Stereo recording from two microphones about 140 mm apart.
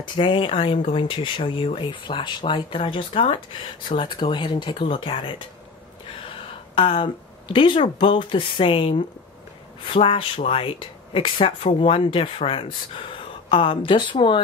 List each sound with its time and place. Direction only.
0.0 s speech: 35° left (ahead or behind)
6.7 s speech: 40° left (ahead or behind)